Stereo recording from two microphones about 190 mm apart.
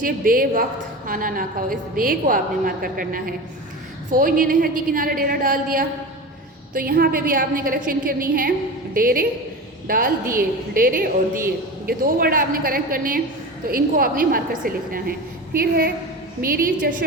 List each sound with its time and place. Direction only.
0.0 s a woman's voice: 45° right (ahead or behind)